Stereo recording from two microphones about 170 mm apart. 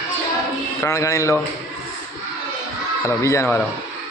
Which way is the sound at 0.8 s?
15° left (ahead or behind).